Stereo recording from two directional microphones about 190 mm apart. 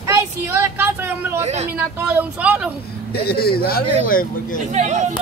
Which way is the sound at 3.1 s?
55° left (ahead or behind).